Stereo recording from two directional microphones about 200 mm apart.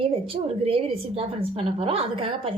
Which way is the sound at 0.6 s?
30° right (ahead or behind).